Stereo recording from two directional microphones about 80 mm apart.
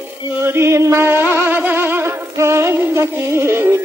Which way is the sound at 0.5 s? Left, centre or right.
Right.